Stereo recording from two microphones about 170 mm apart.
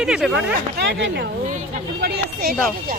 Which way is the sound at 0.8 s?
85° right.